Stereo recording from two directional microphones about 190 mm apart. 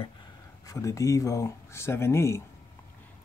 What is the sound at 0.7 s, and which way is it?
Speech, 15° left (ahead or behind).